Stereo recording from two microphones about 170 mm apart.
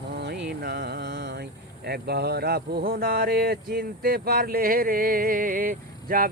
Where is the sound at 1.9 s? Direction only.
70° right (ahead or behind).